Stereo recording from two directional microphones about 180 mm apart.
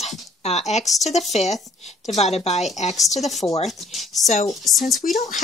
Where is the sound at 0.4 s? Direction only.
40° left (ahead or behind).